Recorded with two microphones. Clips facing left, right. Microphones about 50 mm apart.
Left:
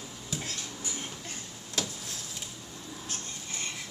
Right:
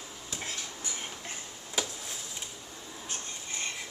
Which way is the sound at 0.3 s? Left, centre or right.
Centre.